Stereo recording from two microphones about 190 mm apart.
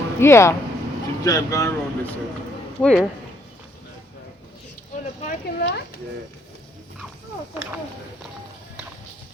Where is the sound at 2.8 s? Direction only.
5° left (ahead or behind).